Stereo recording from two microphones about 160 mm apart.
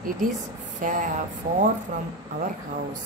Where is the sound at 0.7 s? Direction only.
55° right (ahead or behind).